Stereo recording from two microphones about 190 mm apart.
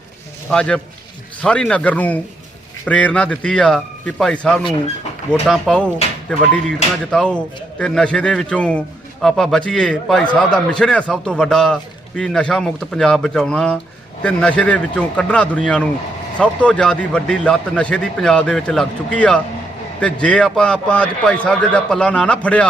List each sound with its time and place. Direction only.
0.5 s a man's voice: 5° left (ahead or behind)